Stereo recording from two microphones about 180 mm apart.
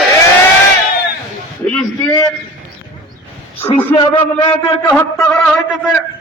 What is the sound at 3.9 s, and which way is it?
Speech, 25° left (ahead or behind).